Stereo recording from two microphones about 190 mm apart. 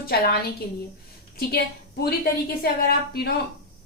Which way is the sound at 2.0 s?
55° left (ahead or behind).